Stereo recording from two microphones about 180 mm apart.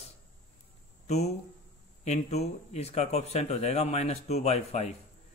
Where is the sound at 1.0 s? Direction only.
35° left (ahead or behind).